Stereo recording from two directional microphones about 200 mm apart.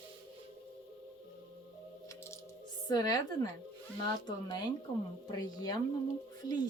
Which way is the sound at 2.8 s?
20° left (ahead or behind).